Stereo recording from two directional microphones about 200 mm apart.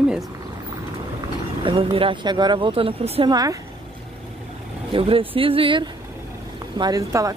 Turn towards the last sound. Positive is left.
turn(degrees=-15)  # may be behind; listen again after turning